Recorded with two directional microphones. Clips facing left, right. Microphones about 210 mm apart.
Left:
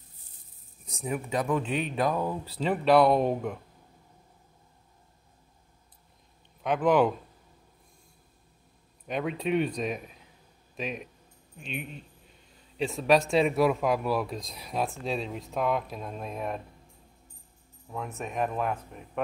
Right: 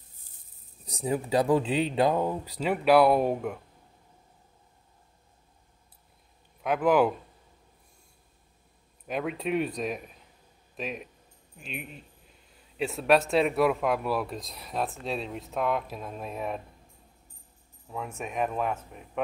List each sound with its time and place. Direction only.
0.8 s speech: 35° right (ahead or behind); by 3.5 s 5° right (ahead or behind)
6.6 s speech: 5° right (ahead or behind)
9.0 s speech: 5° right (ahead or behind)
17.8 s speech: 5° right (ahead or behind)